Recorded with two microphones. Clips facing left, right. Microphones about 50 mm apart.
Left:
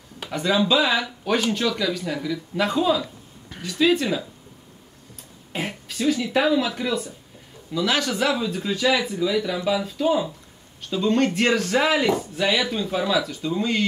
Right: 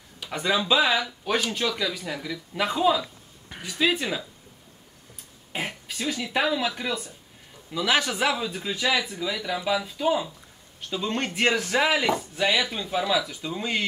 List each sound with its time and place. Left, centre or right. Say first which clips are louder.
0.3 s speech: left 3 dB; centre
5.5 s speech: left 2 dB; centre
8.9 s speech: left 3 dB; left
9.2 s speech: left 6 dB; centre